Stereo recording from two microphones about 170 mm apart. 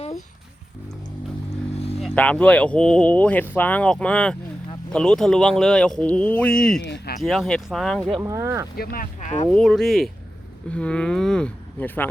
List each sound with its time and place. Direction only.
2.0 s speech: 5° left (ahead or behind)
6.8 s a sound: 80° left
7.2 s speech: centre (ahead or behind)
8.2 s speech: 15° right (ahead or behind)
8.7 s speech: 60° left (ahead or behind); by 9.5 s 45° left (ahead or behind)
9.5 s speech: centre (ahead or behind)